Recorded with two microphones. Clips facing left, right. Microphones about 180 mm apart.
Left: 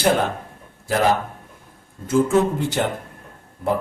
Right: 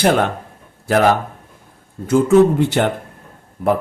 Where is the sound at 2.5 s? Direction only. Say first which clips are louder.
Right 6 dB; 65° right (ahead or behind).